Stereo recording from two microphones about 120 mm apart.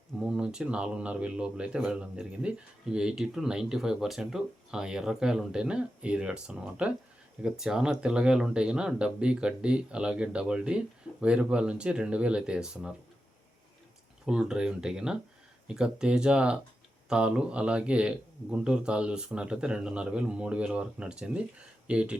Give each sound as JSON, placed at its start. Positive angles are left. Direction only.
{"t": 0.2, "sound": "speech", "side_deg": -5}
{"t": 14.3, "sound": "speech", "side_deg": -5}